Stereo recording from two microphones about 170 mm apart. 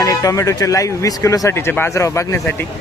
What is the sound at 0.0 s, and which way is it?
Speech, 20° left (ahead or behind).